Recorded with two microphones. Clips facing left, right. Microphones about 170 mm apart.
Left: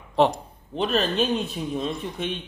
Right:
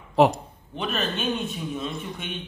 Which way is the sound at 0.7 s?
35° left (ahead or behind).